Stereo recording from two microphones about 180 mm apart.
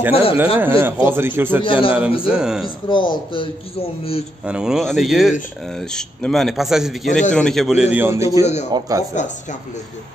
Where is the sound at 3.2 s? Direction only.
30° left (ahead or behind).